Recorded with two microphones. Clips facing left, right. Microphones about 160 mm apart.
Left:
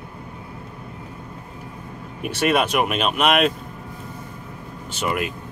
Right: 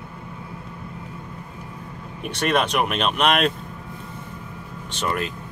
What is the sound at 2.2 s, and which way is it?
Speech, 5° left (ahead or behind).